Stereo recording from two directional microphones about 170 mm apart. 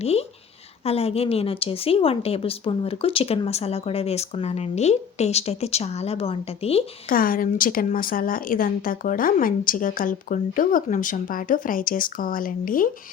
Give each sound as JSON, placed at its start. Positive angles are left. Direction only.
{"t": 0.0, "sound": "a woman's voice", "side_deg": 35}
{"t": 7.1, "sound": "a woman's voice", "side_deg": 55}